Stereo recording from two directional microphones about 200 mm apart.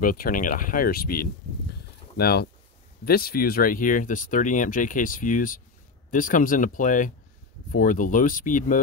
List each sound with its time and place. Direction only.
0.0 s speech: 45° left (ahead or behind)